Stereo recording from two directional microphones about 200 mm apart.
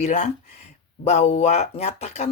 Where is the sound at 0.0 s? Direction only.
35° left (ahead or behind).